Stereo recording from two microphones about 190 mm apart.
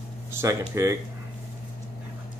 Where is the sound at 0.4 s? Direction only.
15° right (ahead or behind).